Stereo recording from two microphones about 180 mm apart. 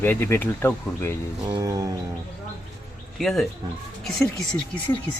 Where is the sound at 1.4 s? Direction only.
20° right (ahead or behind).